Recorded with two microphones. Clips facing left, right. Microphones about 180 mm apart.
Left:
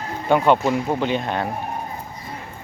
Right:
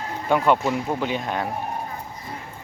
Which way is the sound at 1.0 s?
5° right (ahead or behind).